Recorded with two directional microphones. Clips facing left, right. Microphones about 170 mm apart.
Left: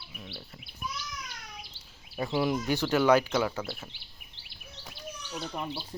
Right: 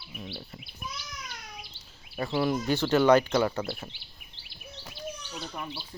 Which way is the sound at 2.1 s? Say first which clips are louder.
Right 1 dB; 15° left (ahead or behind).